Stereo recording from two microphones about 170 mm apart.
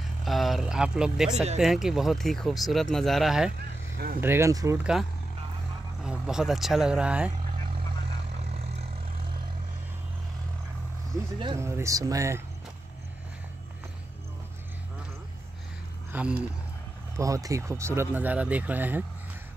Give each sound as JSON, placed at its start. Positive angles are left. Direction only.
{"t": 0.2, "sound": "speech", "side_deg": 0}
{"t": 1.3, "sound": "speech", "side_deg": -40}
{"t": 1.6, "sound": "speech", "side_deg": 0}
{"t": 4.2, "sound": "speech", "side_deg": -15}
{"t": 6.0, "sound": "speech", "side_deg": -5}
{"t": 11.5, "sound": "speech", "side_deg": -15}
{"t": 16.1, "sound": "speech", "side_deg": -10}
{"t": 17.2, "sound": "speech", "side_deg": -20}